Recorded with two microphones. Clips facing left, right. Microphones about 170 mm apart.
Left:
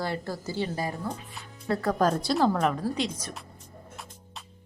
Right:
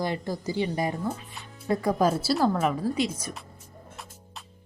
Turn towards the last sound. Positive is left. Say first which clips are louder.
# right 2 dB
turn(degrees=-10)  # may be behind; listen again after turning